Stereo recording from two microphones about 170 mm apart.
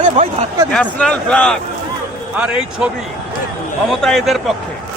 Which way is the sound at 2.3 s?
5° right (ahead or behind).